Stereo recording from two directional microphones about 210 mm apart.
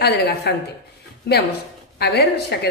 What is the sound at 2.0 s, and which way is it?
Speech, 50° left (ahead or behind).